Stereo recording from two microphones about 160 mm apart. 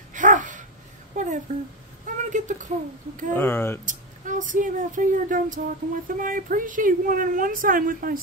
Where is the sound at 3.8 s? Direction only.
55° right (ahead or behind).